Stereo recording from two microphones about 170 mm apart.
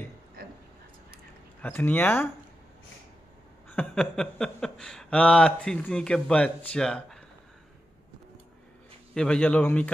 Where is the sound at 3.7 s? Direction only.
5° left (ahead or behind).